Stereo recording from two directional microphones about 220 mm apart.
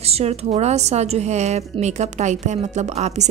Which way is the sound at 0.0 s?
30° right (ahead or behind).